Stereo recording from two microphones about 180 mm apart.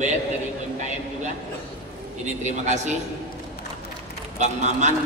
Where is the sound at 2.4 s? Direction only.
40° right (ahead or behind).